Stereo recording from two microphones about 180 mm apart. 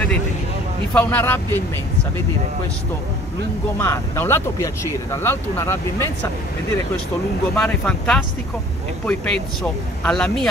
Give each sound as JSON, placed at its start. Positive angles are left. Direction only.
{"t": 0.9, "sound": "speech", "side_deg": 10}
{"t": 3.8, "sound": "speech", "side_deg": 15}
{"t": 7.5, "sound": "speech", "side_deg": 5}